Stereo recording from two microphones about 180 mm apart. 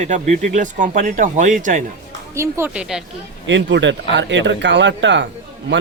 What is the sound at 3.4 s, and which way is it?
A man's voice, 90° right.